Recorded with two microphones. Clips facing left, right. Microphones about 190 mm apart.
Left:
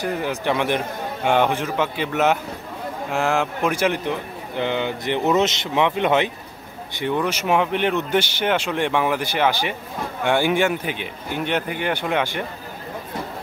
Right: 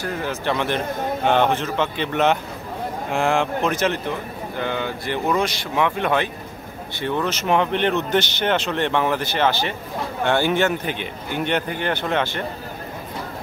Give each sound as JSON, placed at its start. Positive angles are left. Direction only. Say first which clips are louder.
{"t": 0.0, "sound": "speech", "louder": "left 2 dB", "side_deg": 15}